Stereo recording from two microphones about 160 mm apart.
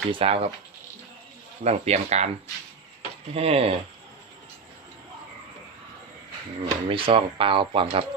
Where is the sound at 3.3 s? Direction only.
40° right (ahead or behind).